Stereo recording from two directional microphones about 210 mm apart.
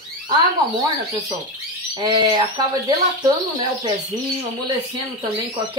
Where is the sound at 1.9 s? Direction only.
20° right (ahead or behind).